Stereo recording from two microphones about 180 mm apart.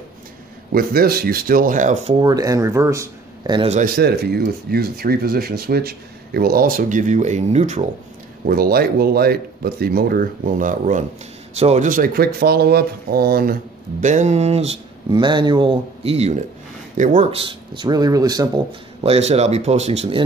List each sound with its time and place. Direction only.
0.7 s speech: 55° right (ahead or behind)
2.1 s speech: 20° right (ahead or behind)
3.6 s speech: 40° right (ahead or behind)
3.9 s speech: 60° right (ahead or behind); by 7.8 s 40° right (ahead or behind)
8.5 s speech: 55° right (ahead or behind)
14.0 s speech: 40° right (ahead or behind); by 18.8 s 20° right (ahead or behind)
19.0 s speech: 35° right (ahead or behind)